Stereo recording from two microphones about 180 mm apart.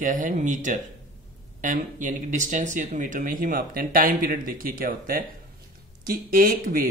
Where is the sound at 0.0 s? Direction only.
45° right (ahead or behind).